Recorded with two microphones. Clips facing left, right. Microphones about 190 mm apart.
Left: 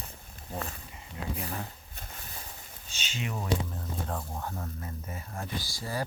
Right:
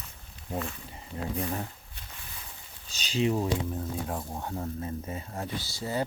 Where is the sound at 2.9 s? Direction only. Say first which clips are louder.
Right 10 dB; 35° right (ahead or behind).